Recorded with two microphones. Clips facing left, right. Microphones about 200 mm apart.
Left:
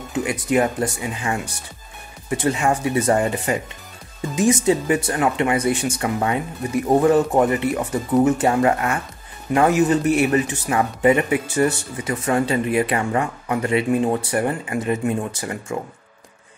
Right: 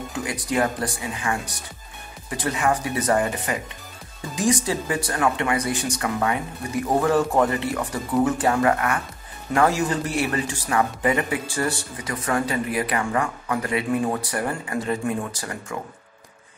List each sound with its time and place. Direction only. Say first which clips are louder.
0.1 s speech: left 7 dB; 20° left (ahead or behind)